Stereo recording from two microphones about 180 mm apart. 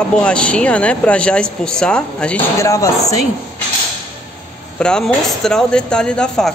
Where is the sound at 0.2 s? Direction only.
5° left (ahead or behind).